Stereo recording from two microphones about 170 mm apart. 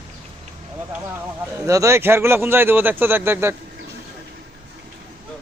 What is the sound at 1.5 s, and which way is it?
A man's voice, 20° right (ahead or behind).